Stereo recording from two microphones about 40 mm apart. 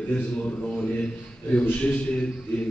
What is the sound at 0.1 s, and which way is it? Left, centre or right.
A man's voice, left.